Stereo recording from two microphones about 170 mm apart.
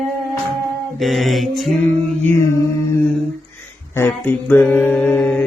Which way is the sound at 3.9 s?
15° left (ahead or behind).